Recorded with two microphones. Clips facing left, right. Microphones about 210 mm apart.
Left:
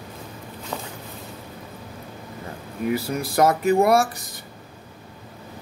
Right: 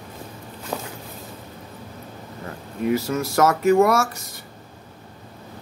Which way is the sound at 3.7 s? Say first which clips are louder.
Even; 35° left (ahead or behind).